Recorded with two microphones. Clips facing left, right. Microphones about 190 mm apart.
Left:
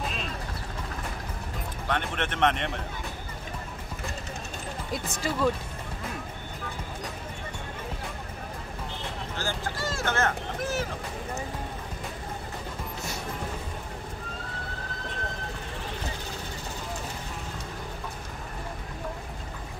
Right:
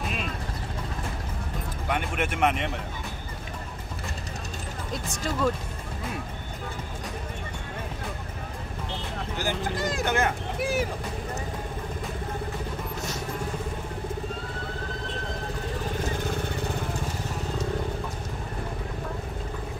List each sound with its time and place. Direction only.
1.9 s speech: 10° right (ahead or behind)
5.1 s speech: 5° left (ahead or behind)
9.4 s speech: 15° right (ahead or behind)